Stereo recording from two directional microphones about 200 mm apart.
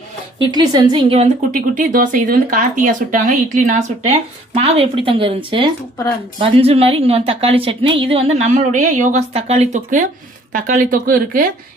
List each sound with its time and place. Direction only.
0.3 s a woman's voice: 20° right (ahead or behind)
1.7 s a woman's voice: 45° right (ahead or behind)